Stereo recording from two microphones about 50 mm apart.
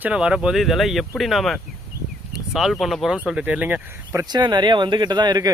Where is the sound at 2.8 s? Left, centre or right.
Centre.